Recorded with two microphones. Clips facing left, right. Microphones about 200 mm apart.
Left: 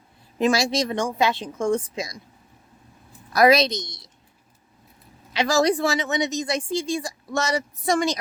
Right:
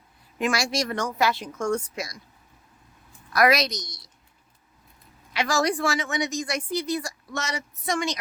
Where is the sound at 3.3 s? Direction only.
25° left (ahead or behind).